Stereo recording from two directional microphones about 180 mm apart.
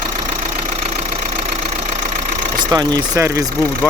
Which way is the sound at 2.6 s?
25° right (ahead or behind).